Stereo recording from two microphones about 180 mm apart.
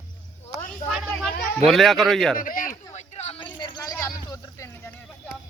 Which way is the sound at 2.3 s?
50° left (ahead or behind).